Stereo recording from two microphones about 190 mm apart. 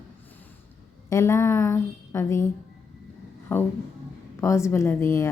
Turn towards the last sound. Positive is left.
turn(degrees=15)  # may be behind; listen again after turning